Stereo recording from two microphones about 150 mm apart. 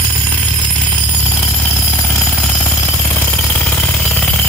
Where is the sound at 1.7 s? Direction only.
Centre (ahead or behind).